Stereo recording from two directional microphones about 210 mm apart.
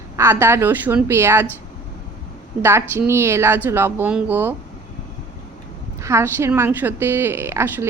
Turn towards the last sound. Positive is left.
turn(degrees=-10)  # may be behind; listen again after turning